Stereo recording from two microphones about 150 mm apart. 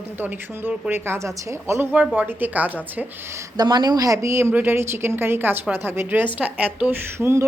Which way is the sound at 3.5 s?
25° right (ahead or behind).